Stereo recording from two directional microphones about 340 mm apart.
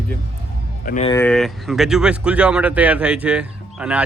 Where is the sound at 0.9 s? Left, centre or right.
Centre.